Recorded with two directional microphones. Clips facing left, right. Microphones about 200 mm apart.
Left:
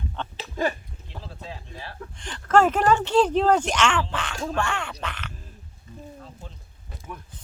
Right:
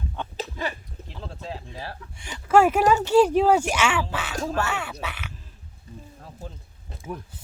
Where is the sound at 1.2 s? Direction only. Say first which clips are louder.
Right 5 dB; 40° right (ahead or behind).